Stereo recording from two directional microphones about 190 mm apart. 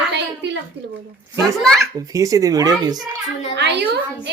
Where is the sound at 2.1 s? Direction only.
15° right (ahead or behind).